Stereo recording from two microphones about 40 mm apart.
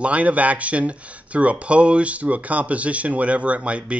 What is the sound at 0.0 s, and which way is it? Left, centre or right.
Speech, right.